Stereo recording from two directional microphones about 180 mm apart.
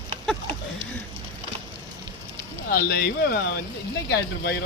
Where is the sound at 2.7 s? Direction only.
55° left (ahead or behind).